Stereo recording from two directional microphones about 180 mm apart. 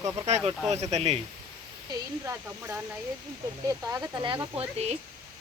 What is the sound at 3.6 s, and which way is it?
Speech, 20° right (ahead or behind).